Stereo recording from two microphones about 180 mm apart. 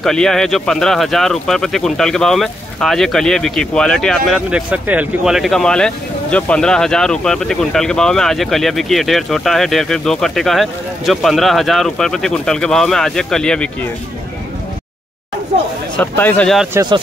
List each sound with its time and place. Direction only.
0.0 s speech: 5° left (ahead or behind)
16.0 s speech: 10° left (ahead or behind)
16.7 s speech: 25° right (ahead or behind)